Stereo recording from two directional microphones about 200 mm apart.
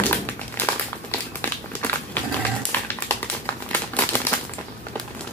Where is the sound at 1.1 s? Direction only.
10° left (ahead or behind).